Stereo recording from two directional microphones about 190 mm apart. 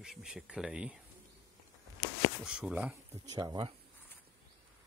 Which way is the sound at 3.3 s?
25° right (ahead or behind).